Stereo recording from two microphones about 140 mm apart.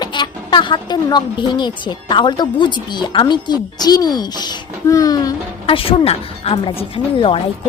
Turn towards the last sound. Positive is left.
turn(degrees=40)  # may be behind; listen again after turning